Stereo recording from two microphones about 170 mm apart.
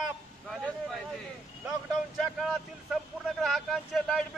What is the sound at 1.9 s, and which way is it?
A man's voice, centre (ahead or behind).